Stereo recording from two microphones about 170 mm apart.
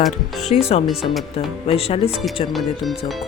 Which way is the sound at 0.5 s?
35° left (ahead or behind).